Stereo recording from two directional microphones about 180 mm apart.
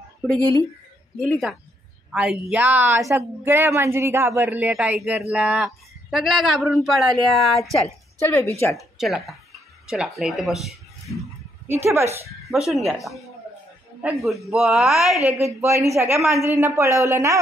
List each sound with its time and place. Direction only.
1.2 s a woman's voice: 5° left (ahead or behind)
2.6 s speech: 15° right (ahead or behind)
8.2 s a woman's voice: 10° left (ahead or behind)
8.7 s speech: centre (ahead or behind)
11.6 s speech: 15° right (ahead or behind)
12.4 s speech: centre (ahead or behind)
15.4 s speech: 15° right (ahead or behind)